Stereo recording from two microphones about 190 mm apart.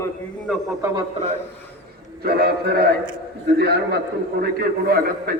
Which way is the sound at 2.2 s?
55° right (ahead or behind).